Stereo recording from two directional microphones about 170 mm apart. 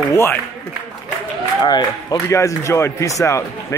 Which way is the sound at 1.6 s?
25° left (ahead or behind).